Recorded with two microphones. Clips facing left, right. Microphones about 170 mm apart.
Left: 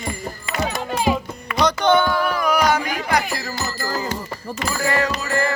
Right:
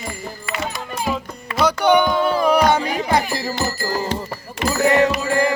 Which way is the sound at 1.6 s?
10° right (ahead or behind).